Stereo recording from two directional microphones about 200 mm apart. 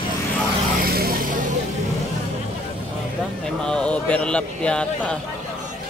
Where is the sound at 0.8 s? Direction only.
50° right (ahead or behind).